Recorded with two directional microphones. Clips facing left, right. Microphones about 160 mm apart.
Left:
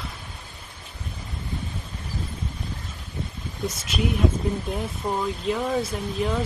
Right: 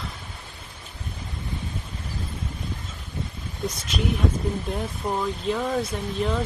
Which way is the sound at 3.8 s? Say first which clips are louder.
Left 2 dB; centre (ahead or behind).